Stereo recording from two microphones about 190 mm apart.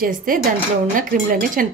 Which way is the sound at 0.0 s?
50° right (ahead or behind).